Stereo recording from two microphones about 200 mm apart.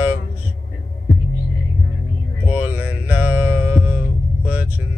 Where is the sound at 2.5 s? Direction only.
10° right (ahead or behind).